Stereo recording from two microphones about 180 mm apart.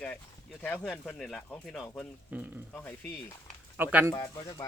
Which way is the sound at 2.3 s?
10° right (ahead or behind).